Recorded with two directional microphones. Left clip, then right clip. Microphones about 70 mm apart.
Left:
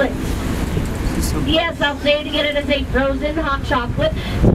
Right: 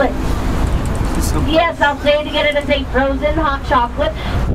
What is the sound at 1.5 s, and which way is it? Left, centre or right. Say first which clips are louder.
Speech: right 4 dB; left.